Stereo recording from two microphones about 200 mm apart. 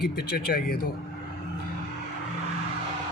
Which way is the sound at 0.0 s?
50° left (ahead or behind).